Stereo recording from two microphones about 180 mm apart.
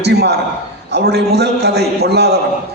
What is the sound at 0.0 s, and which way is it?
A man's voice, 65° right (ahead or behind).